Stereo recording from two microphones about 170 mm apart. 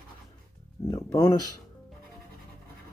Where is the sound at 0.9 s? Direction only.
25° left (ahead or behind).